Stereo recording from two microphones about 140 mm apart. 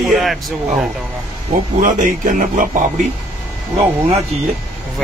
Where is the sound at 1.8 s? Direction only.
70° right (ahead or behind).